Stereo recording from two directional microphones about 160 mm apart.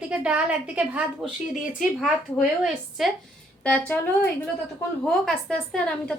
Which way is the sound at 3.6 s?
10° left (ahead or behind).